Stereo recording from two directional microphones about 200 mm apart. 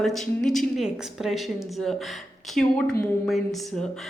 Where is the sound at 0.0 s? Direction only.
Centre (ahead or behind).